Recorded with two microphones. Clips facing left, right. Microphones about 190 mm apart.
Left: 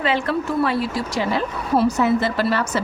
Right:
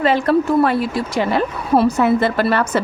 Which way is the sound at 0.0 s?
40° right (ahead or behind).